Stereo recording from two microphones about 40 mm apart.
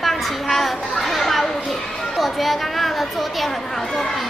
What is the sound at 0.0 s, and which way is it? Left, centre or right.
Children playing, centre.